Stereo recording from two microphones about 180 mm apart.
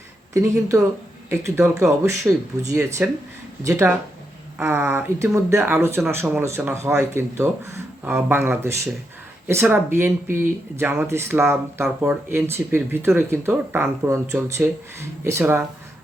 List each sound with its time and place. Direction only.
0.3 s speech: 15° right (ahead or behind)